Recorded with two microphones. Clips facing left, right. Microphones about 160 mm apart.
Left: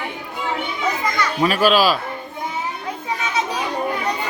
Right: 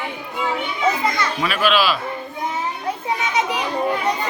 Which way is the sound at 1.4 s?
40° left (ahead or behind).